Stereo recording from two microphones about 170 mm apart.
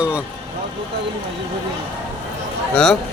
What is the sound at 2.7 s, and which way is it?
Speech, 5° left (ahead or behind).